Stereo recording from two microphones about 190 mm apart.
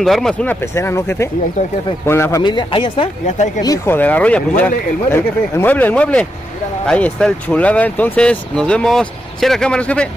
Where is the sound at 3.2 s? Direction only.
40° left (ahead or behind).